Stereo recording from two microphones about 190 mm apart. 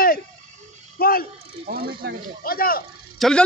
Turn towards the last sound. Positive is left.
turn(degrees=0)  # may be behind; listen again after turning